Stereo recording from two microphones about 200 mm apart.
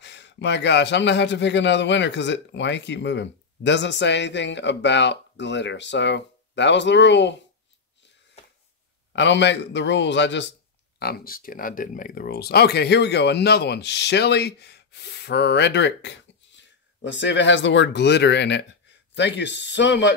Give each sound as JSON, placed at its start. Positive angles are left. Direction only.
{"t": 0.0, "sound": "speech", "side_deg": 60}
{"t": 9.1, "sound": "speech", "side_deg": 60}
{"t": 11.0, "sound": "speech", "side_deg": 50}